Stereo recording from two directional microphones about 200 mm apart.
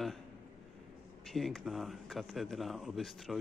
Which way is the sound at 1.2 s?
Centre (ahead or behind).